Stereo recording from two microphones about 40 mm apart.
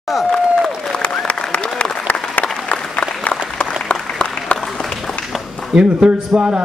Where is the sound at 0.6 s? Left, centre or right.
Left.